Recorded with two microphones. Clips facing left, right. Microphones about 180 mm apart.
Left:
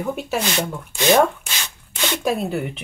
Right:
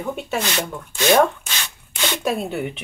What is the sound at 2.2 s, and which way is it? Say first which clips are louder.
Speech: left 2 dB; centre (ahead or behind).